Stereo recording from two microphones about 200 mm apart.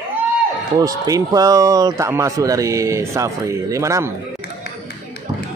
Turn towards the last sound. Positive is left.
turn(degrees=-15)  # may be behind; listen again after turning